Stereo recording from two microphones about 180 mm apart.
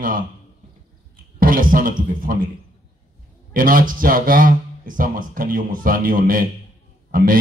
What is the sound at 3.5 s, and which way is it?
Speech, 50° right (ahead or behind).